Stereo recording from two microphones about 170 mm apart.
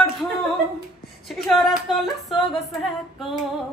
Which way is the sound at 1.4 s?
Centre (ahead or behind).